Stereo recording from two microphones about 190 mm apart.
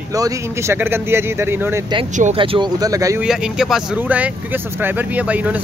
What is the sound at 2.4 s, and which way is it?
Speech, 25° right (ahead or behind).